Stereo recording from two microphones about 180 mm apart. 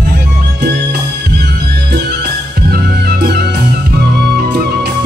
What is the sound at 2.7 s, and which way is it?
Music, 60° right (ahead or behind).